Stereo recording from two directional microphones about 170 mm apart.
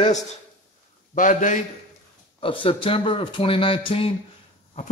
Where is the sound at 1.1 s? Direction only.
50° left (ahead or behind).